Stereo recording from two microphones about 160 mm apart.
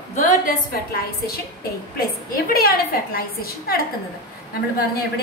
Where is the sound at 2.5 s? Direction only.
70° left (ahead or behind).